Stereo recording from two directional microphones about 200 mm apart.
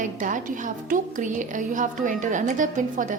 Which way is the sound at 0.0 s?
40° right (ahead or behind).